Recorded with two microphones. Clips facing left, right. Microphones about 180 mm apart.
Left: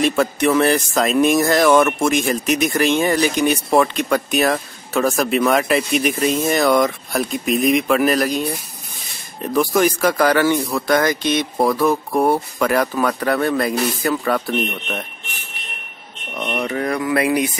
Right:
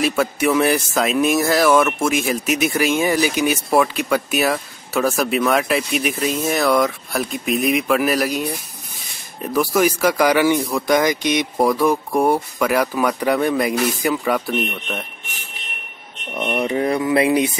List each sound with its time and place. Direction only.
0.0 s speech: 5° right (ahead or behind)
16.3 s speech: 10° right (ahead or behind)
16.6 s a sound: 20° right (ahead or behind)